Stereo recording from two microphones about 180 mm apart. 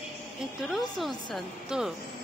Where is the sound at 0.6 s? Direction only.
Centre (ahead or behind).